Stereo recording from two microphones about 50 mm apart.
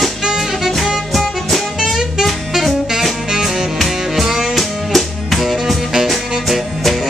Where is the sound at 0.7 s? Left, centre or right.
Centre.